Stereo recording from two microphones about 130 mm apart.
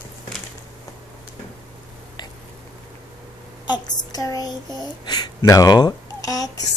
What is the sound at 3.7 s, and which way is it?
A child's voice, 30° left (ahead or behind).